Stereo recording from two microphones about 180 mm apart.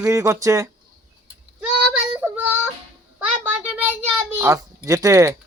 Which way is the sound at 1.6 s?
5° right (ahead or behind).